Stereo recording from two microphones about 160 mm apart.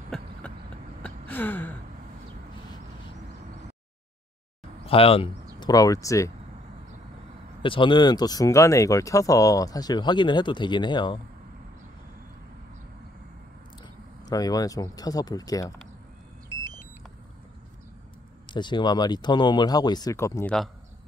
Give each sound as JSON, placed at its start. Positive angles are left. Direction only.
{"t": 0.1, "sound": "a sound", "side_deg": 0}
{"t": 1.0, "sound": "gasp", "side_deg": 10}
{"t": 4.8, "sound": "speech", "side_deg": 35}
{"t": 5.6, "sound": "speech", "side_deg": 25}
{"t": 7.6, "sound": "speech", "side_deg": 30}
{"t": 14.3, "sound": "speech", "side_deg": 20}
{"t": 18.5, "sound": "speech", "side_deg": 30}